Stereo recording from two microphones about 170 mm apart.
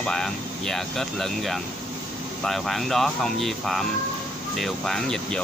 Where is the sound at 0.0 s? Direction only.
5° left (ahead or behind).